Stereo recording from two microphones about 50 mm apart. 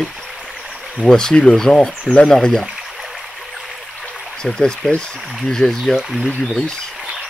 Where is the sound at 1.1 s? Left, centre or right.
Centre.